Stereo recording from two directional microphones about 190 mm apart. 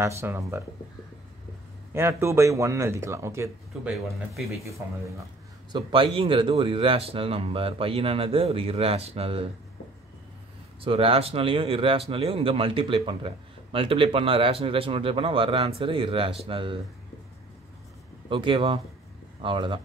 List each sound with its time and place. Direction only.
0.0 s speech: 15° right (ahead or behind)
1.9 s speech: 10° right (ahead or behind)
5.7 s speech: 25° right (ahead or behind)
10.8 s speech: 30° right (ahead or behind)
18.3 s speech: 25° right (ahead or behind)